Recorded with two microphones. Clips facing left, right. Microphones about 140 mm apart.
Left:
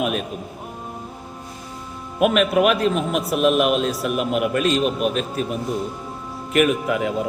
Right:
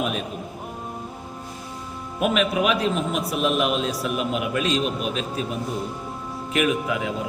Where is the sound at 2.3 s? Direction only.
50° left (ahead or behind).